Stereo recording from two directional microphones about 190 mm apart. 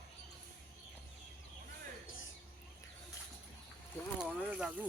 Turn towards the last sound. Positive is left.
turn(degrees=-5)  # may be behind; listen again after turning